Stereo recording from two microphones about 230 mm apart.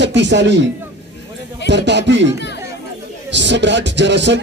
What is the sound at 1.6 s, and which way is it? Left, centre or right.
Speech, right.